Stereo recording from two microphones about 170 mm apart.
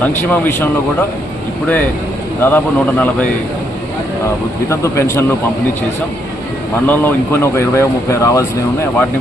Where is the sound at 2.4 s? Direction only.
15° left (ahead or behind).